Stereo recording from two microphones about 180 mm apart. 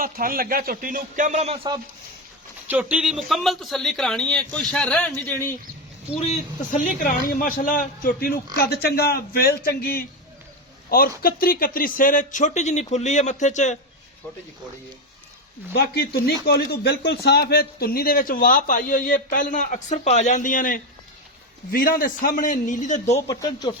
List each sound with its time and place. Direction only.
0.0 s speech: 55° right (ahead or behind)
2.6 s speech: 10° right (ahead or behind); by 5.5 s 10° left (ahead or behind)
6.1 s speech: 35° left (ahead or behind); by 10.1 s 55° left (ahead or behind)
11.2 s speech: 55° left (ahead or behind)
15.7 s speech: 60° left (ahead or behind); by 23.2 s 40° left (ahead or behind)
23.2 s speech: 20° left (ahead or behind)